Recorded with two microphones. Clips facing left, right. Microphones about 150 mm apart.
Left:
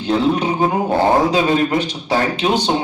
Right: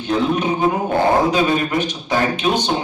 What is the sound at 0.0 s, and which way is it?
A man's voice, 30° left (ahead or behind).